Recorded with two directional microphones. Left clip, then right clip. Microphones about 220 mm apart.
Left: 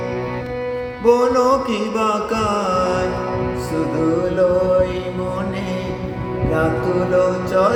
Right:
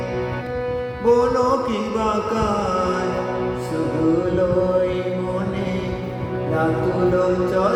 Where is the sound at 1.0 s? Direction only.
25° left (ahead or behind).